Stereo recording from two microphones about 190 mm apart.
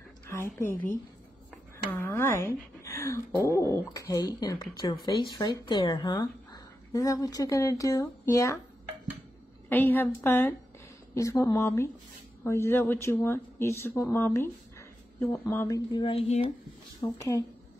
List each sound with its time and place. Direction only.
0.3 s a woman's voice: 10° left (ahead or behind)
9.7 s speech: 10° left (ahead or behind); by 16.5 s 30° left (ahead or behind)
17.0 s speech: 20° left (ahead or behind)